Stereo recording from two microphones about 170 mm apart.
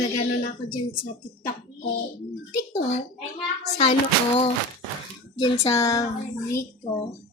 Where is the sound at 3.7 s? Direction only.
35° left (ahead or behind).